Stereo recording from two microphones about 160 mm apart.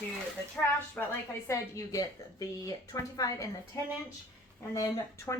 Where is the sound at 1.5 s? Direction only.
20° left (ahead or behind).